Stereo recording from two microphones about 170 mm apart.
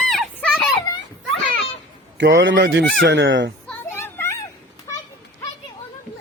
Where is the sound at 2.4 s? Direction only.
90° right.